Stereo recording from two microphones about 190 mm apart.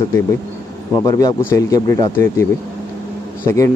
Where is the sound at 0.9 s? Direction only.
20° left (ahead or behind).